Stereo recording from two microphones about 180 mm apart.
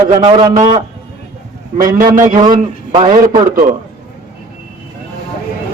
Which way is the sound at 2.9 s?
40° right (ahead or behind).